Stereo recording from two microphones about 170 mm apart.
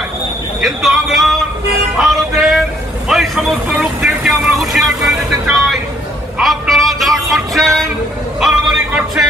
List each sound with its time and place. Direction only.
0.6 s speech: centre (ahead or behind)
2.0 s music: centre (ahead or behind)
3.1 s vehicle: centre (ahead or behind)
6.3 s music: 5° right (ahead or behind)